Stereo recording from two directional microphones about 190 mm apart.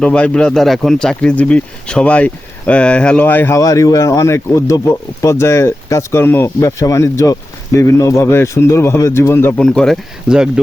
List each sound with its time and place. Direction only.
0.0 s speech: 5° left (ahead or behind)